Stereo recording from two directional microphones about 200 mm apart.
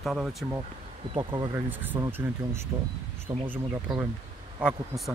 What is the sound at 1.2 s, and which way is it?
Speech, 20° right (ahead or behind).